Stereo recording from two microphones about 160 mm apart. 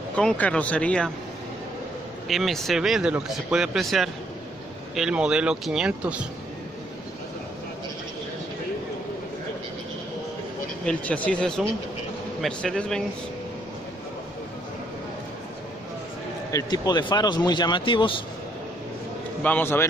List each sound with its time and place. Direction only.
0.1 s speech: 5° left (ahead or behind)
2.2 s speech: centre (ahead or behind)
10.9 s speech: 10° left (ahead or behind)
16.5 s speech: 25° left (ahead or behind)
19.4 s speech: 10° left (ahead or behind)